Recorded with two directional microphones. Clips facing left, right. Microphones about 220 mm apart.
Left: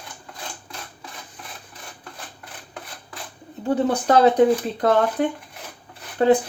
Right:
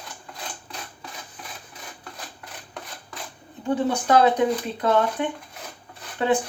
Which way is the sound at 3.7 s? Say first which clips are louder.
Left 3 dB; 40° left (ahead or behind).